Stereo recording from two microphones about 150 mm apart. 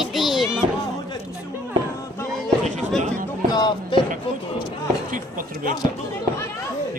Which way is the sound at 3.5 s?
30° left (ahead or behind).